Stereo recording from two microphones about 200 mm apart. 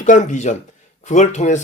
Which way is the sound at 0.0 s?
40° left (ahead or behind).